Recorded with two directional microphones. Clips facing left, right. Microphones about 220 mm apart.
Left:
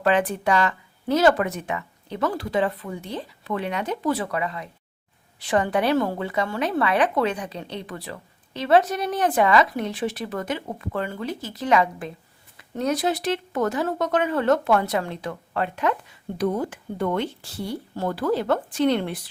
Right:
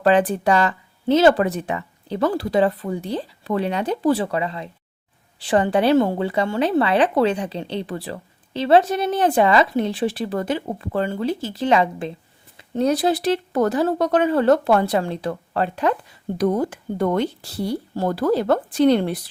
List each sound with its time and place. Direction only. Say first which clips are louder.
0.0 s a woman's voice: right 4 dB; 35° right (ahead or behind)